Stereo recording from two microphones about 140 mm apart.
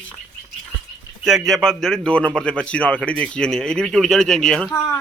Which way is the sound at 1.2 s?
Centre (ahead or behind).